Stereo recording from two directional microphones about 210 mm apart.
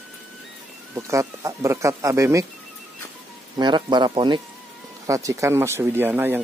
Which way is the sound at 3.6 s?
20° right (ahead or behind).